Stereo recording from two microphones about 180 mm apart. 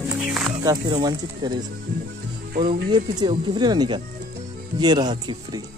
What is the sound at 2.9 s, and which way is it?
A man's voice, 25° right (ahead or behind).